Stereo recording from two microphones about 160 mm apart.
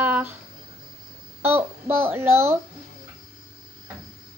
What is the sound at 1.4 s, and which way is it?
A child's voice, 10° right (ahead or behind).